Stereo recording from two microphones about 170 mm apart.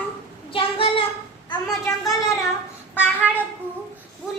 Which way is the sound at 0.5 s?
30° left (ahead or behind).